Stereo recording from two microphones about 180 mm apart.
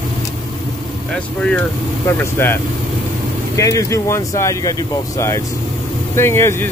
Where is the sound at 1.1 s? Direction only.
5° left (ahead or behind).